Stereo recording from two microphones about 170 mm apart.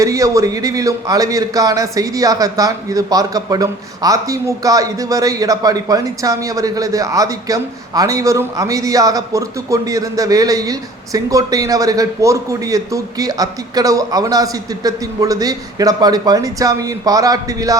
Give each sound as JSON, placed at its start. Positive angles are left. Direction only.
{"t": 0.0, "sound": "speech", "side_deg": -20}